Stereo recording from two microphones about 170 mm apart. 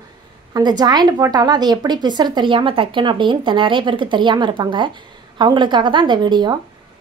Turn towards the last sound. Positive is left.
turn(degrees=-25)  # may be behind; listen again after turning